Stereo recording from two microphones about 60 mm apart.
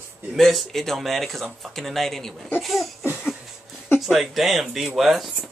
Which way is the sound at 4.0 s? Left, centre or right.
Centre.